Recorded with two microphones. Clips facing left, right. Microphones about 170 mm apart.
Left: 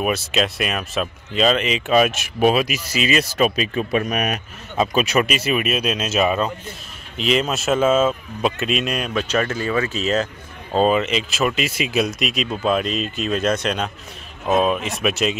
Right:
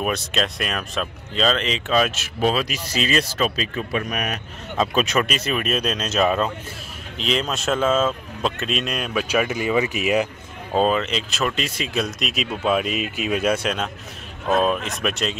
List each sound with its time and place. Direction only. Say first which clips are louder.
0.0 s speech: left 3 dB; 5° left (ahead or behind); by 4.4 s 20° left (ahead or behind)
4.7 s speech: left 2 dB; 5° left (ahead or behind); by 10.2 s 15° right (ahead or behind)
10.9 s speech: left 3 dB; 5° left (ahead or behind)
12.2 s speech: left 3 dB; centre (ahead or behind)